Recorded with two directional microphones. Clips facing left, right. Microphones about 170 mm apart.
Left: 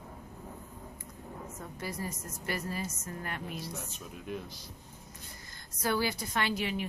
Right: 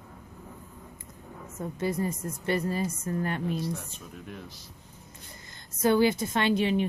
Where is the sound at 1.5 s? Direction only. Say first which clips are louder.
Right 12 dB; 25° right (ahead or behind).